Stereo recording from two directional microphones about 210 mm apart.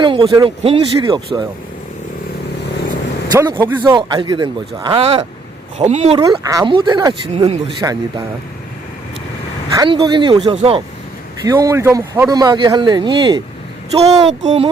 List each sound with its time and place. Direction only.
0.0 s a man's voice: 25° right (ahead or behind)
3.3 s a man's voice: 15° right (ahead or behind); by 6.1 s 30° right (ahead or behind)
6.1 s a man's voice: 20° right (ahead or behind)
9.7 s a man's voice: 20° right (ahead or behind)
11.4 s a man's voice: 15° right (ahead or behind)